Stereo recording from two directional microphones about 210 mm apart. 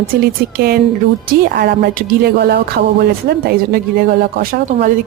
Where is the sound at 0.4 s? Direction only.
45° right (ahead or behind).